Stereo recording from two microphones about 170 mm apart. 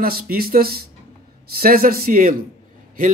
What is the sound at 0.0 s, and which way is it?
Speech, 60° right (ahead or behind).